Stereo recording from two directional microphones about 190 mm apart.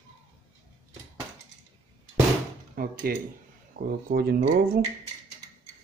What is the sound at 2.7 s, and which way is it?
Speech, 50° right (ahead or behind).